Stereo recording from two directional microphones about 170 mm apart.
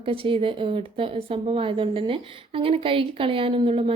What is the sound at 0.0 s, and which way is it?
Speech, 30° right (ahead or behind).